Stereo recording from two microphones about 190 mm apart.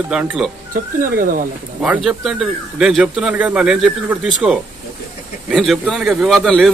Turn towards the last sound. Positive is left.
turn(degrees=0)  # may be behind; listen again after turning